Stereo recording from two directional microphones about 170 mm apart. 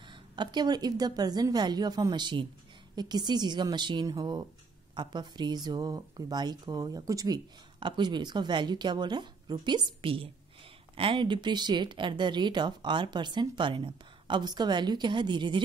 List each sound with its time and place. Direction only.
0.0 s speech: 25° right (ahead or behind)